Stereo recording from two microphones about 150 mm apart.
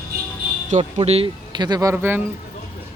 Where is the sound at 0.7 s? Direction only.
50° right (ahead or behind).